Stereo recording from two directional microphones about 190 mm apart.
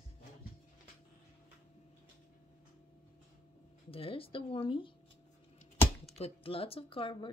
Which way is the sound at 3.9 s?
30° left (ahead or behind).